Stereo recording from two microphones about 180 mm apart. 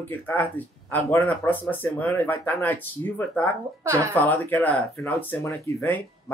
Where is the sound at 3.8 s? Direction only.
15° right (ahead or behind).